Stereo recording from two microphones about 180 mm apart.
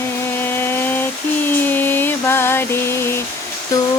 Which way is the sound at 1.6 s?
10° left (ahead or behind).